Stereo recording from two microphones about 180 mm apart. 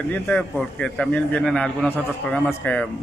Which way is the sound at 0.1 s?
5° left (ahead or behind).